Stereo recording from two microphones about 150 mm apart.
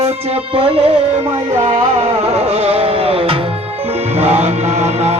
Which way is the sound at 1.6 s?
55° right (ahead or behind).